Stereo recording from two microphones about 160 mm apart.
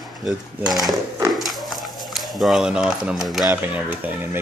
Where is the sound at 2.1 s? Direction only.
Centre (ahead or behind).